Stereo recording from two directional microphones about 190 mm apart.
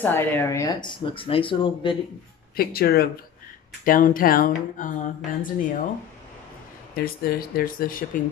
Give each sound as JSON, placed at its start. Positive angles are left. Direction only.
{"t": 0.0, "sound": "speech", "side_deg": 10}
{"t": 2.5, "sound": "speech", "side_deg": 55}
{"t": 7.0, "sound": "speech", "side_deg": 50}